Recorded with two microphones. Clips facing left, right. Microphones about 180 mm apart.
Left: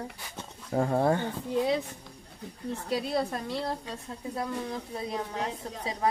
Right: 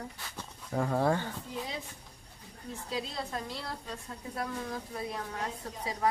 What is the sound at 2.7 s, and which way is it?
Speech, 65° left (ahead or behind).